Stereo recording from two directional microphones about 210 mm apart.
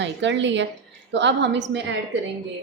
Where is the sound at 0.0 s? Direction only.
60° right (ahead or behind).